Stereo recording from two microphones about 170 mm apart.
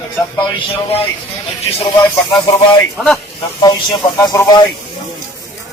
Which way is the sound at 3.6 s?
25° left (ahead or behind).